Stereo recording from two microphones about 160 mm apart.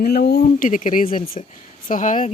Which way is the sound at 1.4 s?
45° left (ahead or behind).